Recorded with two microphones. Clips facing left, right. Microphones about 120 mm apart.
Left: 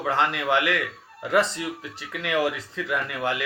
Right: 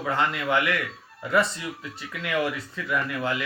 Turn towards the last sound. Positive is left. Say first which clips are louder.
# even
turn(degrees=80)